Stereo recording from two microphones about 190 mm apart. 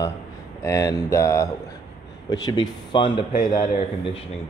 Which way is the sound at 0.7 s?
15° left (ahead or behind).